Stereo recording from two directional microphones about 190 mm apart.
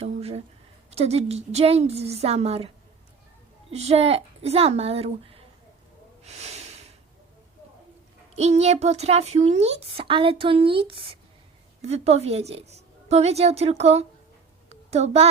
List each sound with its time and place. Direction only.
0.0 s speech: 35° right (ahead or behind)
3.7 s speech: 35° right (ahead or behind)
6.2 s snort: 35° right (ahead or behind)
8.4 s speech: 35° right (ahead or behind)
14.7 s a sound: 35° right (ahead or behind)